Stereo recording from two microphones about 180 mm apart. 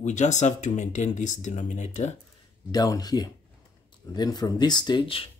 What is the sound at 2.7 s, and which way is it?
A man's voice, 20° left (ahead or behind).